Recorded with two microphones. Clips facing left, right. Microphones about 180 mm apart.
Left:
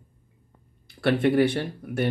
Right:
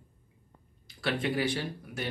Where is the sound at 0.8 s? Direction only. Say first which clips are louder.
Left 9 dB; 55° left (ahead or behind).